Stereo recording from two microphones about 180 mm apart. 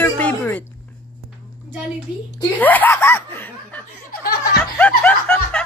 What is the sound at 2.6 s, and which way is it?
Laughter, 10° left (ahead or behind).